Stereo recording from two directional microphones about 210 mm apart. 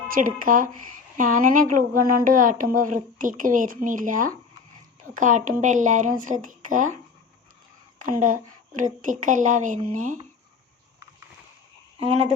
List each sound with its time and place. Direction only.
0.1 s a woman's voice: 40° right (ahead or behind)
8.1 s a woman's voice: 40° right (ahead or behind)